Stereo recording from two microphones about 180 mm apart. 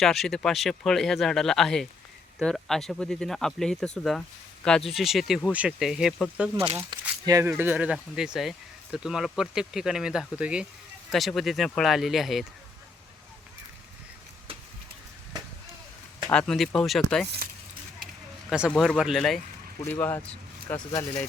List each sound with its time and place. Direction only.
0.0 s speech: centre (ahead or behind)
7.3 s speech: 20° right (ahead or behind)
7.5 s speech: 10° right (ahead or behind)
16.2 s speech: 5° left (ahead or behind)
18.0 s a sound: centre (ahead or behind)
18.7 s speech: centre (ahead or behind)